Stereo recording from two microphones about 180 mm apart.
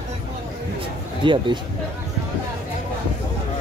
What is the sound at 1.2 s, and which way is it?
Speech, 25° right (ahead or behind).